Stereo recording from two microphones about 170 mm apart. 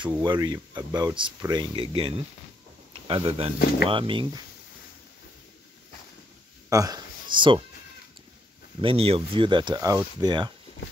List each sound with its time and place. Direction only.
0.1 s speech: 25° right (ahead or behind)
6.7 s speech: 20° right (ahead or behind)
8.8 s speech: 35° right (ahead or behind)